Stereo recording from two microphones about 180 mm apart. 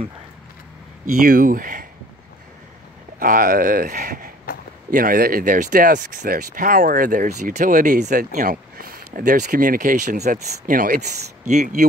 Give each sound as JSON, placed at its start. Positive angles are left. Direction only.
{"t": 1.1, "sound": "speech", "side_deg": -50}
{"t": 3.2, "sound": "speech", "side_deg": -50}